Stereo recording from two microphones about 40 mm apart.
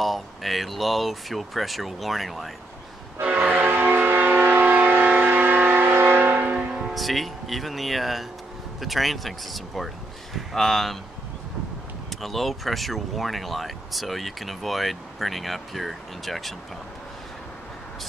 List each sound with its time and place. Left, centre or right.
0.0 s speech: centre
3.3 s train horn: right
3.6 s a sound: right
6.5 s music: right
6.9 s speech: centre
12.1 s speech: centre